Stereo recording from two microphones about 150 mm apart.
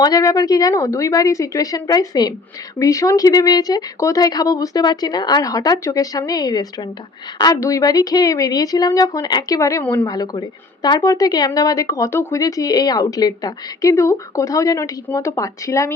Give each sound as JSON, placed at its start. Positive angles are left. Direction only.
{"t": 0.0, "sound": "a woman's voice", "side_deg": 25}
{"t": 10.1, "sound": "speech", "side_deg": 25}